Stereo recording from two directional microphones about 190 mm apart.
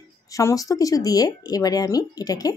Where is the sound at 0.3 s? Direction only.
15° left (ahead or behind).